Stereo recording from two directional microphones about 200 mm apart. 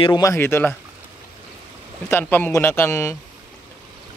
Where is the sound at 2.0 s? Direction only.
10° left (ahead or behind).